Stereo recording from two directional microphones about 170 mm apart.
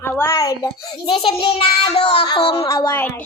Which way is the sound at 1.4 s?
35° left (ahead or behind).